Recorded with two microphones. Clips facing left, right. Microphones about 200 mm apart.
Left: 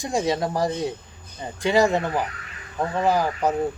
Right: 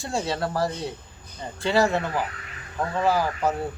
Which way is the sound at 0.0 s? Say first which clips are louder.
Left 4 dB; 15° left (ahead or behind).